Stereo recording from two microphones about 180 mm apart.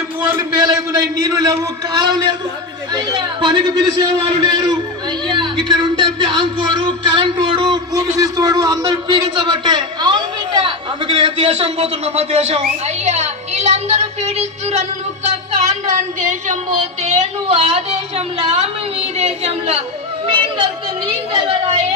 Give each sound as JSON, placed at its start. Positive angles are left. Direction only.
{"t": 0.3, "sound": "a man's voice", "side_deg": -20}
{"t": 15.9, "sound": "speech", "side_deg": -45}
{"t": 20.3, "sound": "music", "side_deg": -30}